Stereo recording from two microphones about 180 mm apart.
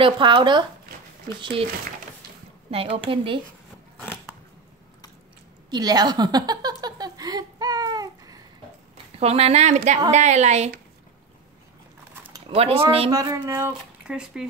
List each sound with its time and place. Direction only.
0.0 s speech: 25° right (ahead or behind)
2.7 s speech: 30° right (ahead or behind)
5.7 s a sound: 20° right (ahead or behind)
9.2 s speech: 35° right (ahead or behind)
12.3 s a sound: 30° right (ahead or behind)
13.1 s speech: 20° right (ahead or behind)